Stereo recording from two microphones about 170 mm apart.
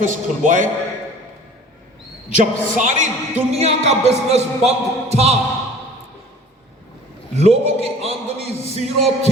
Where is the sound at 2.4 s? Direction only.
50° right (ahead or behind).